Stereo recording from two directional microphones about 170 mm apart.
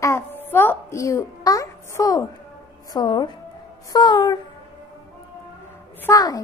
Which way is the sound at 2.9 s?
25° left (ahead or behind).